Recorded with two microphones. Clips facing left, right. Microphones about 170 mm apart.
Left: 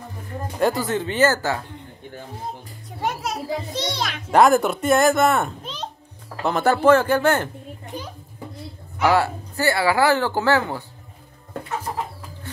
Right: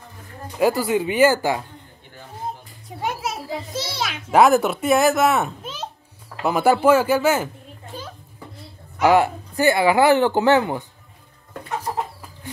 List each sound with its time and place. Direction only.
0.6 s speech: 10° right (ahead or behind)
3.0 s a child's voice: centre (ahead or behind)
7.8 s children playing: 15° left (ahead or behind)
9.0 s speech: 15° right (ahead or behind)